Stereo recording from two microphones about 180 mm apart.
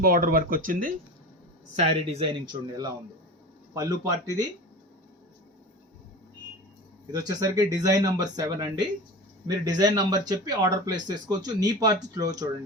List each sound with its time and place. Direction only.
0.0 s speech: 50° right (ahead or behind)
1.8 s speech: 25° right (ahead or behind)
7.1 s speech: 20° right (ahead or behind)